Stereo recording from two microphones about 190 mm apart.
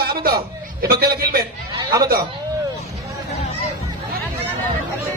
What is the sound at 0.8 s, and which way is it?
Speech, 55° right (ahead or behind).